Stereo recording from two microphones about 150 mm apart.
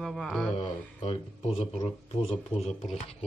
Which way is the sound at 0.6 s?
40° left (ahead or behind).